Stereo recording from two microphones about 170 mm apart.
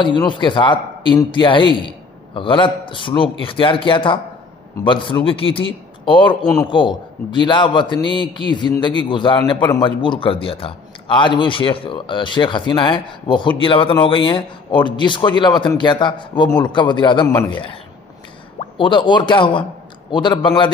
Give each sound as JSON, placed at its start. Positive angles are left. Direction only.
{"t": 0.0, "sound": "a man's voice", "side_deg": 30}